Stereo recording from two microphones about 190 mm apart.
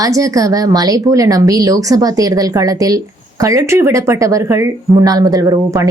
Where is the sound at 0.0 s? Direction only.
15° right (ahead or behind).